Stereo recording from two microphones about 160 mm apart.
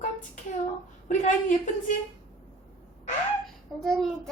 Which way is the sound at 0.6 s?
50° left (ahead or behind).